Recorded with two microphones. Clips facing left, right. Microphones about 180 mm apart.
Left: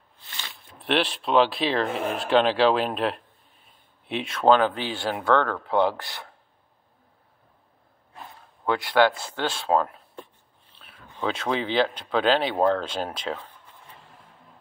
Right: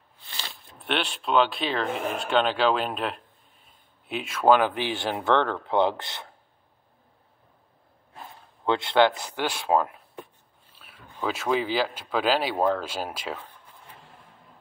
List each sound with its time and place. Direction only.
0.7 s speech: centre (ahead or behind); by 6.3 s 20° right (ahead or behind)
8.6 s speech: 25° right (ahead or behind)
10.7 s a sound: 10° right (ahead or behind)
11.2 s speech: 5° right (ahead or behind)